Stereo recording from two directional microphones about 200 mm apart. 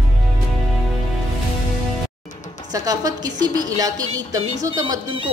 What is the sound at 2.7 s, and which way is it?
A woman's voice, 20° right (ahead or behind).